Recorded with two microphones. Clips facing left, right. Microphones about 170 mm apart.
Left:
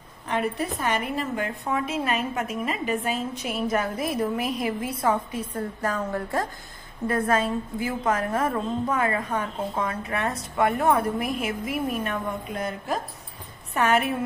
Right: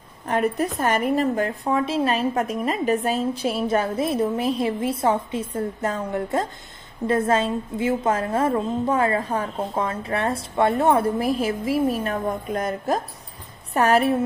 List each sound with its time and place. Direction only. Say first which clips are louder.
0.3 s a woman's voice: right 4 dB; 45° right (ahead or behind)